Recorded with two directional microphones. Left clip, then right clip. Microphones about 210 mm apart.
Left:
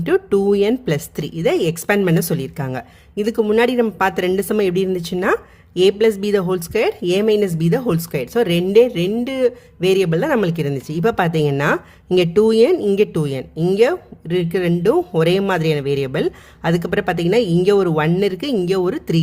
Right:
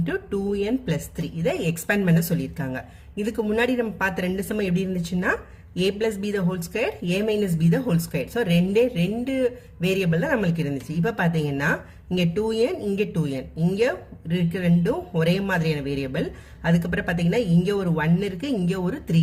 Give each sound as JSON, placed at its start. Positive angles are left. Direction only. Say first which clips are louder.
{"t": 0.0, "sound": "a woman's voice", "louder": "left 11 dB", "side_deg": 45}